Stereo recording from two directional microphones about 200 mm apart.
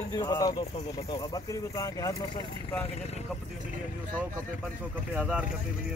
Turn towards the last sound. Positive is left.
turn(degrees=-5)  # may be behind; listen again after turning